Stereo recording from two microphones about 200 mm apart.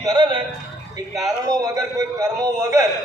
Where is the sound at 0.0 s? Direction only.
20° right (ahead or behind).